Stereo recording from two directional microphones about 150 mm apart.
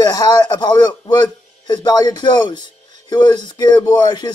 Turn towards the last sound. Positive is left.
turn(degrees=30)  # may be behind; listen again after turning